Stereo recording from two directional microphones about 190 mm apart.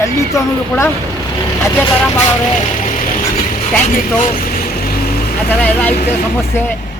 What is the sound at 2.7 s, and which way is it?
Vehicle, 45° left (ahead or behind).